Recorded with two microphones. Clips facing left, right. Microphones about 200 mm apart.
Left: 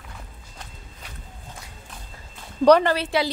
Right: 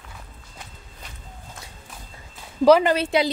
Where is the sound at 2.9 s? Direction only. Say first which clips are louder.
Right 2 dB; 20° right (ahead or behind).